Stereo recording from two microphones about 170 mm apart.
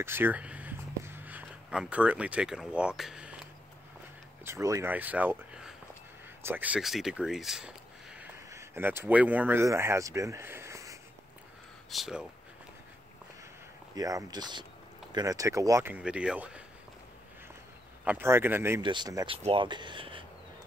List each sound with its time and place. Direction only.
0.0 s speech: 15° right (ahead or behind)
4.5 s speech: 20° right (ahead or behind)
11.9 s speech: centre (ahead or behind)
13.9 s speech: 20° right (ahead or behind)
18.0 s speech: 15° right (ahead or behind)
18.8 s speech: 25° right (ahead or behind)